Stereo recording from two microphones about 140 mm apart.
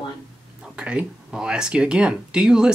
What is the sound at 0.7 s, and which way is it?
Speech, 10° right (ahead or behind).